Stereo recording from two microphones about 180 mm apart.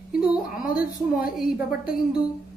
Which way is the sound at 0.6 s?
55° left (ahead or behind).